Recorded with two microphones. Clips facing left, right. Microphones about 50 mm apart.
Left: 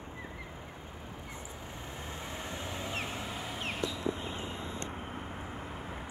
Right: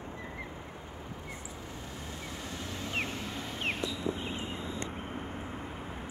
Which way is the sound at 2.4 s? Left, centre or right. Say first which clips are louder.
Even; left.